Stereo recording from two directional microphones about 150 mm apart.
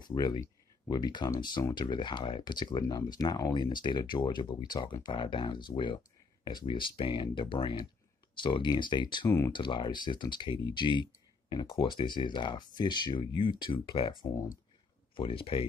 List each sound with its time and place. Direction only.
0.0 s speech: 30° left (ahead or behind)
15.1 s speech: 35° left (ahead or behind)